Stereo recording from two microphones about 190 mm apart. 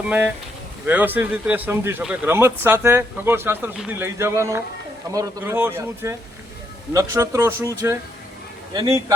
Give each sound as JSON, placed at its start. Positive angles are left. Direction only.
{"t": 0.9, "sound": "speech", "side_deg": -10}
{"t": 8.7, "sound": "speech", "side_deg": -20}